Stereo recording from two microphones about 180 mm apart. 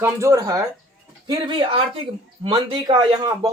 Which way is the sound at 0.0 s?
15° right (ahead or behind).